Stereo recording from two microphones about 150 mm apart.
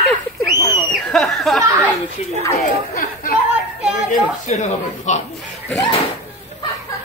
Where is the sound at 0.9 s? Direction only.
Centre (ahead or behind).